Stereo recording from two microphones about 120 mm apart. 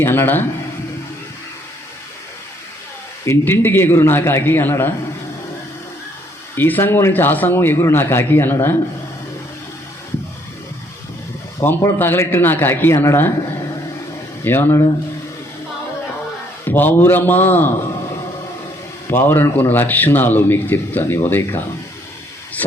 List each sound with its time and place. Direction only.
0.0 s a man's voice: 20° left (ahead or behind)
3.2 s a man's voice: 20° left (ahead or behind)
6.6 s a man's voice: 15° left (ahead or behind)
11.6 s a man's voice: 20° left (ahead or behind)
14.4 s a man's voice: 20° left (ahead or behind)
16.6 s a man's voice: 15° left (ahead or behind)
19.0 s a man's voice: 20° left (ahead or behind)